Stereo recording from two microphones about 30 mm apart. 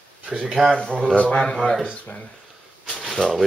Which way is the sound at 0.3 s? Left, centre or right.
Right.